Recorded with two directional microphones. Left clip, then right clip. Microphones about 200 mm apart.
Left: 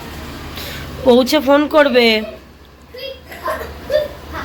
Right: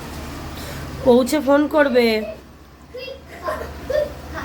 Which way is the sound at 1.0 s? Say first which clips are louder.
Left 4 dB; centre (ahead or behind).